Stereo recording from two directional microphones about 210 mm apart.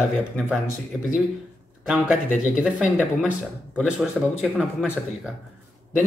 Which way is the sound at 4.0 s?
5° right (ahead or behind).